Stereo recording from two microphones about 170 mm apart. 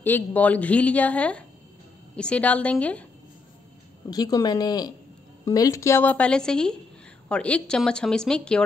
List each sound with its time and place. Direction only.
0.0 s a woman's voice: 10° left (ahead or behind)
4.1 s a woman's voice: 20° left (ahead or behind); by 8.6 s 5° left (ahead or behind)